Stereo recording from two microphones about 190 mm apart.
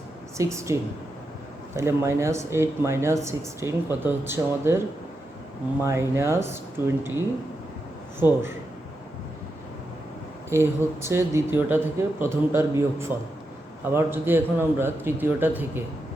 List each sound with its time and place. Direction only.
0.3 s speech: 15° right (ahead or behind)
5.8 s speech: 15° right (ahead or behind)
10.5 s speech: 15° right (ahead or behind)